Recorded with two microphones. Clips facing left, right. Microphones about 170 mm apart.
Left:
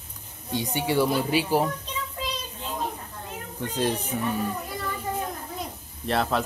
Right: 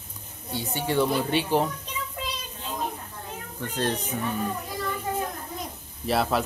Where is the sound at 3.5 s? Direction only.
15° left (ahead or behind).